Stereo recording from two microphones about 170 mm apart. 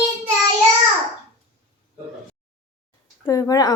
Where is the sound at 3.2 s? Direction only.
20° left (ahead or behind).